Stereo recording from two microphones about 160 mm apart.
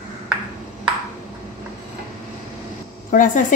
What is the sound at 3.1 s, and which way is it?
Speech, 55° left (ahead or behind).